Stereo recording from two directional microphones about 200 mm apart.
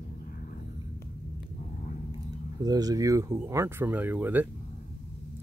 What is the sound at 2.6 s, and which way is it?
Speech, 20° right (ahead or behind).